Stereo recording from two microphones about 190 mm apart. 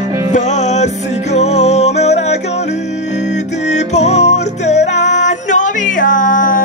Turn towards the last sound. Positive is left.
turn(degrees=45)  # may be behind; listen again after turning